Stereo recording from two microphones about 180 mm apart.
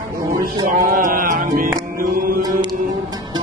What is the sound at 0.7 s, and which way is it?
Music, 50° right (ahead or behind).